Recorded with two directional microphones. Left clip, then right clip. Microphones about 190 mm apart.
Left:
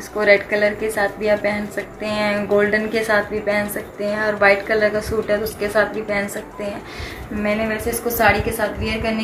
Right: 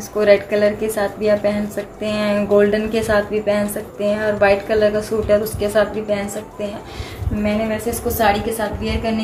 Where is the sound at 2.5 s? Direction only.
25° right (ahead or behind).